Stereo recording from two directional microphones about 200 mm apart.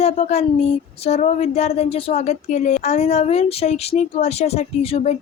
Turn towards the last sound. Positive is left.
turn(degrees=30)  # may be behind; listen again after turning